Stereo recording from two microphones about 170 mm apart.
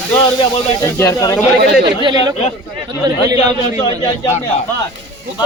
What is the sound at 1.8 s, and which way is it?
Speech, 25° right (ahead or behind).